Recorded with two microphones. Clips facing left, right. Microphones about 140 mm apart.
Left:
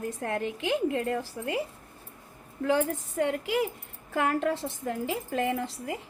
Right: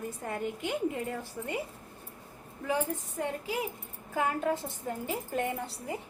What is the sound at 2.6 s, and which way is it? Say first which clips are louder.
A woman's voice: left 5 dB; 80° left.